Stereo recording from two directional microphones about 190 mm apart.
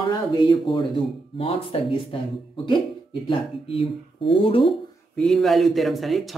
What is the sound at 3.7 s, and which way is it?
Speech, 30° left (ahead or behind).